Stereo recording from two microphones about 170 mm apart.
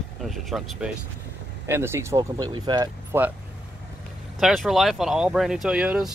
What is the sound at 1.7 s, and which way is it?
Speech, 15° right (ahead or behind).